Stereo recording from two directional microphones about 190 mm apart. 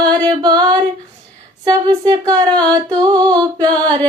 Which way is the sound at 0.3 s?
20° right (ahead or behind).